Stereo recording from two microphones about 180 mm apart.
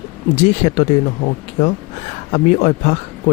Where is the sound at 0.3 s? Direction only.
40° left (ahead or behind).